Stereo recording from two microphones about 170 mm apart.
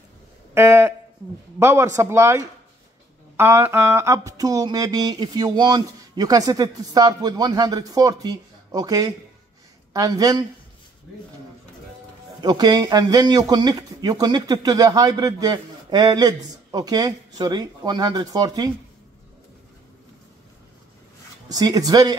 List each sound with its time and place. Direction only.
0.6 s speech: 15° right (ahead or behind)
12.4 s speech: 25° right (ahead or behind)
21.5 s speech: 20° right (ahead or behind)